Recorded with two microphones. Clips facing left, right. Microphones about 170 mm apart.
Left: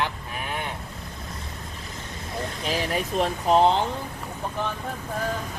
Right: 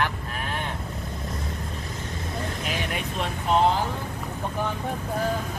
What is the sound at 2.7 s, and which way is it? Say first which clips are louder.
Speech: left 8 dB; 35° left (ahead or behind).